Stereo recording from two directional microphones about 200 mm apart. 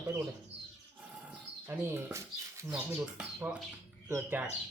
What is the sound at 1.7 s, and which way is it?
Speech, 10° right (ahead or behind).